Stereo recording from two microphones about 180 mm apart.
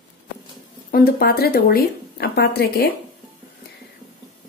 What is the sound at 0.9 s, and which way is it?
Speech, 55° left (ahead or behind).